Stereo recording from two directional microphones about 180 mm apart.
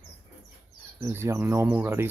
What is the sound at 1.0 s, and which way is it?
Speech, 15° right (ahead or behind).